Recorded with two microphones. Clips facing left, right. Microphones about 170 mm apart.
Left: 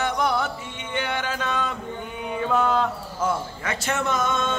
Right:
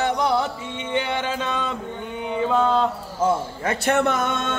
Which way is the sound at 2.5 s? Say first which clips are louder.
Right 2 dB; 25° right (ahead or behind).